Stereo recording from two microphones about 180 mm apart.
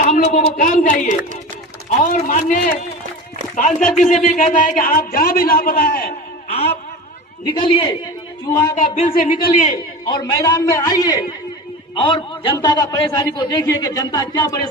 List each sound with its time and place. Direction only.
0.0 s a woman's voice: 45° left (ahead or behind)
3.7 s speech: 5° left (ahead or behind)
3.9 s a man's voice: 40° left (ahead or behind); by 6.1 s 55° left (ahead or behind)
7.4 s a man's voice: 25° left (ahead or behind)
9.7 s a man's voice: 25° left (ahead or behind)